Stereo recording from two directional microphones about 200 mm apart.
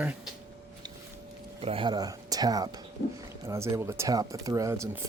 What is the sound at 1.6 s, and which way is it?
Speech, 25° right (ahead or behind).